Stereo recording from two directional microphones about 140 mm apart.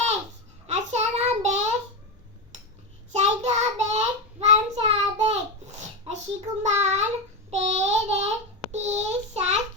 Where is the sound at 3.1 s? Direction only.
50° right (ahead or behind).